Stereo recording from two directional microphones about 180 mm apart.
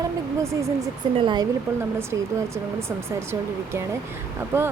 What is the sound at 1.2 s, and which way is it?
Speech, 25° right (ahead or behind).